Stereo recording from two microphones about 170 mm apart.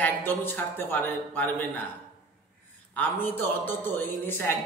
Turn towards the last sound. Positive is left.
turn(degrees=10)  # may be behind; listen again after turning